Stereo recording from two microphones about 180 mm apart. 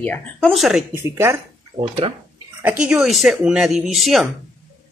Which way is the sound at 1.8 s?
30° right (ahead or behind).